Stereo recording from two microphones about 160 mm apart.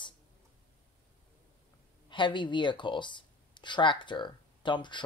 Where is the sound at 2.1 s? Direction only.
30° left (ahead or behind).